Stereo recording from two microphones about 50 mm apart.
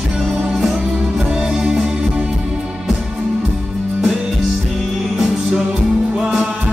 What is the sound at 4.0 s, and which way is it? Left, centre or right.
Music, centre.